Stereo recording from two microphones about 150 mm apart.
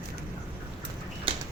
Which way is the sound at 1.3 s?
35° right (ahead or behind).